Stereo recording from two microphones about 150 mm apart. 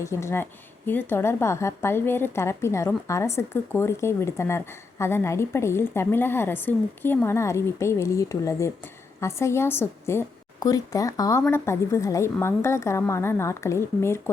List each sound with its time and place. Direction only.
0.0 s a woman's voice: 20° left (ahead or behind)